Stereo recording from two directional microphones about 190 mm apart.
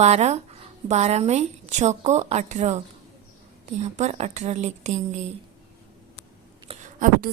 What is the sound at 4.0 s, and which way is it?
A woman's voice, 35° right (ahead or behind).